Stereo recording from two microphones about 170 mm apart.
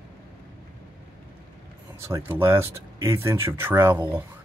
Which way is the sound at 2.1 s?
15° right (ahead or behind).